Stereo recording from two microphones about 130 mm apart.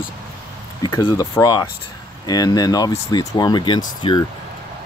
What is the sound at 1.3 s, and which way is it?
Speech, 30° left (ahead or behind).